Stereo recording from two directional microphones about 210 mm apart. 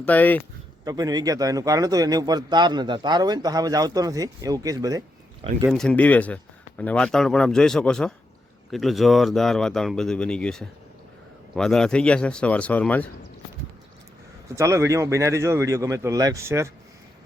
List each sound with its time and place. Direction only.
0.0 s speech: 10° left (ahead or behind)
0.9 s speech: 20° right (ahead or behind)
5.6 s speech: centre (ahead or behind)
14.5 s speech: 15° right (ahead or behind)